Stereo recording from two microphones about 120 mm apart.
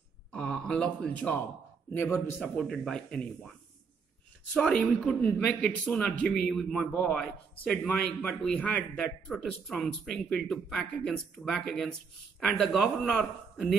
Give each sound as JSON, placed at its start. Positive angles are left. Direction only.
{"t": 0.3, "sound": "a man's voice", "side_deg": 5}
{"t": 2.4, "sound": "a man's voice", "side_deg": 5}
{"t": 4.6, "sound": "a man's voice", "side_deg": 5}